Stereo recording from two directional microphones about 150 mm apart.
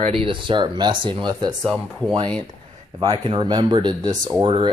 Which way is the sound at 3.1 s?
40° right (ahead or behind).